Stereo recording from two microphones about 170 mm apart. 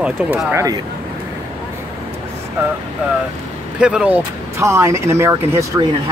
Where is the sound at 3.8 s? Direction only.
5° right (ahead or behind).